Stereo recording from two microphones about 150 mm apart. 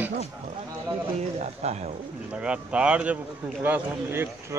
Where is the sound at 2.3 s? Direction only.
5° right (ahead or behind).